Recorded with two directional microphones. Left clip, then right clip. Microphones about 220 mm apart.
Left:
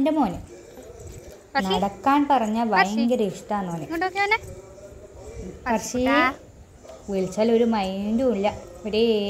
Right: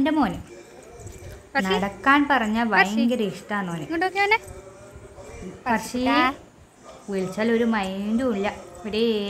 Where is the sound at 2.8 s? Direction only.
30° right (ahead or behind).